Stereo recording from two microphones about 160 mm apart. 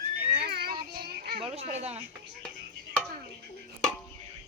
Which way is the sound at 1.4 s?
40° right (ahead or behind).